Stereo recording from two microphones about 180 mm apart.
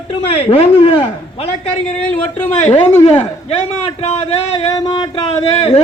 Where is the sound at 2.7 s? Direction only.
40° left (ahead or behind).